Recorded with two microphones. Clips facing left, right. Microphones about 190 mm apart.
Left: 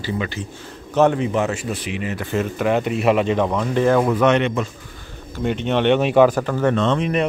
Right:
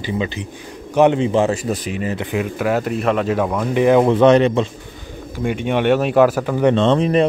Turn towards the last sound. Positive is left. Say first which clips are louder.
# right 4 dB
turn(degrees=-35)  # may be behind; listen again after turning